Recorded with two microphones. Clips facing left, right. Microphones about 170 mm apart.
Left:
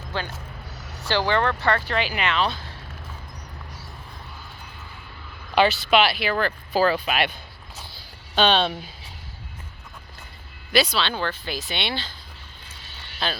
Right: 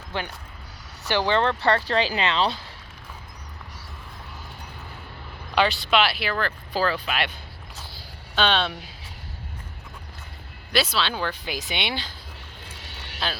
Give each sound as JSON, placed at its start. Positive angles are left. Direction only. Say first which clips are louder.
{"t": 0.1, "sound": "speech", "louder": "even", "side_deg": -20}
{"t": 5.5, "sound": "speech", "louder": "left 3 dB", "side_deg": 5}
{"t": 6.3, "sound": "speech", "louder": "left 4 dB", "side_deg": 10}
{"t": 10.7, "sound": "speech", "louder": "left 2 dB", "side_deg": 0}
{"t": 12.8, "sound": "vehicle", "louder": "right 3 dB", "side_deg": -75}
{"t": 13.1, "sound": "speech", "louder": "left 2 dB", "side_deg": -5}